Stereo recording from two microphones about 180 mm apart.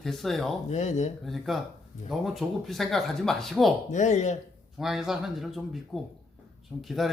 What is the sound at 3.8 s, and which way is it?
Speech, 40° left (ahead or behind).